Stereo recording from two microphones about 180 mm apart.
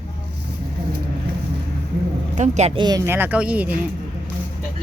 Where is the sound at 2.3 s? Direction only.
40° right (ahead or behind).